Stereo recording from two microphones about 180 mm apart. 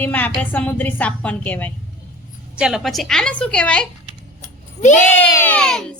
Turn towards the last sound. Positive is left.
turn(degrees=5)  # may be behind; listen again after turning